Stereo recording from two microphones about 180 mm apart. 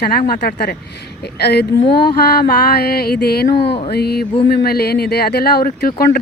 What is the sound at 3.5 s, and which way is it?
Speech, 30° left (ahead or behind).